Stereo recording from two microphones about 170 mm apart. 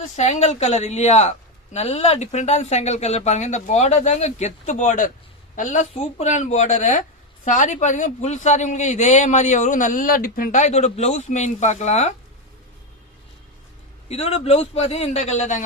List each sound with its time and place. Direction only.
0.2 s a man's voice: 40° left (ahead or behind)
14.1 s speech: 40° left (ahead or behind)